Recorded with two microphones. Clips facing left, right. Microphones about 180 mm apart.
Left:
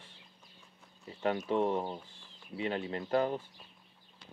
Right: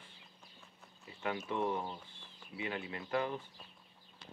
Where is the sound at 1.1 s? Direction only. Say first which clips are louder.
Left 7 dB; 35° left (ahead or behind).